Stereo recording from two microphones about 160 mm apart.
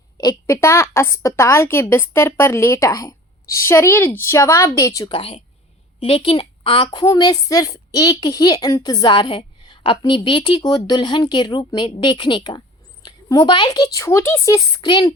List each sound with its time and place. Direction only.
0.2 s a woman's voice: 20° left (ahead or behind)
5.1 s a woman's voice: 35° left (ahead or behind)